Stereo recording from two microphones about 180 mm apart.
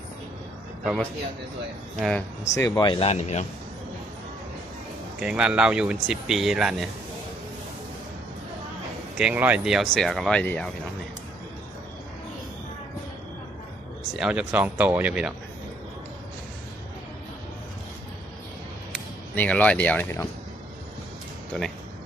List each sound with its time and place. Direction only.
2.0 s speech: 5° left (ahead or behind)
2.6 s speech: 20° left (ahead or behind); by 3.4 s 35° left (ahead or behind)
5.2 s speech: 5° right (ahead or behind)
9.1 s speech: 5° right (ahead or behind)
14.2 s speech: 5° right (ahead or behind)
19.4 s speech: 10° left (ahead or behind)
21.5 s speech: 5° left (ahead or behind)